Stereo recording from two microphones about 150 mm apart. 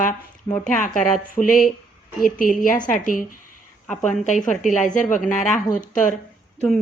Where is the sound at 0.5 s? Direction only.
15° left (ahead or behind).